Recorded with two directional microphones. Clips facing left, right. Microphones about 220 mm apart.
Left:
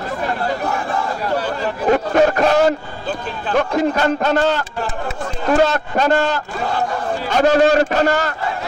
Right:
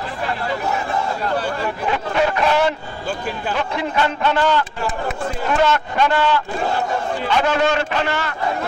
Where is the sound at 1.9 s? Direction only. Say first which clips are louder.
Left 7 dB; 45° left (ahead or behind).